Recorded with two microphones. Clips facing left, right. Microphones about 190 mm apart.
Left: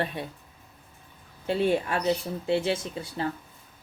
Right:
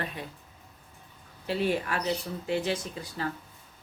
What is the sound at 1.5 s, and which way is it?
Speech, 25° left (ahead or behind).